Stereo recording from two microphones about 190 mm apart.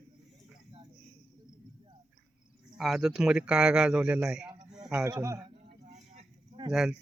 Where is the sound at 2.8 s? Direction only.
Centre (ahead or behind).